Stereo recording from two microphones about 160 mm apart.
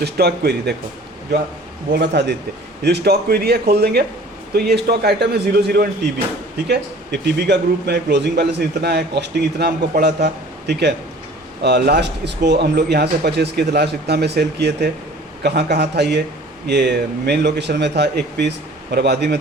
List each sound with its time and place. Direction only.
0.0 s a man's voice: 90° right
1.9 s a man's voice: 90° right
6.7 s a man's voice: 90° right